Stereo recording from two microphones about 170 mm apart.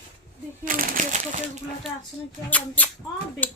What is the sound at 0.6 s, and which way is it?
Speech, 55° right (ahead or behind).